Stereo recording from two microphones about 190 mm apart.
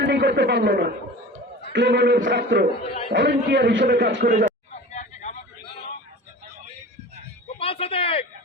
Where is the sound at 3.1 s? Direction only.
70° right (ahead or behind).